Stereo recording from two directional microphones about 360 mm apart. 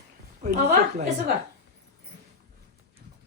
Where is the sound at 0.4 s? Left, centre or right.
Right.